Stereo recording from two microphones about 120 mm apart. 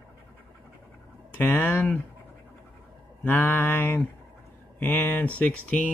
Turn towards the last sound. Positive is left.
turn(degrees=10)  # may be behind; listen again after turning